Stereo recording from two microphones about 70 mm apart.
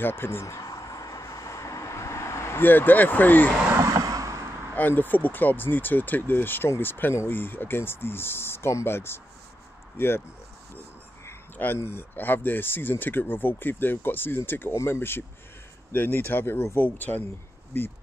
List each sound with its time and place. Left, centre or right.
0.0 s speech: left
0.6 s vehicle: left
3.7 s a sound: right
4.7 s speech: left
11.5 s speech: left